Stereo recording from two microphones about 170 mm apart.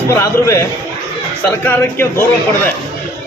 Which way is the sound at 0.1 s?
15° left (ahead or behind).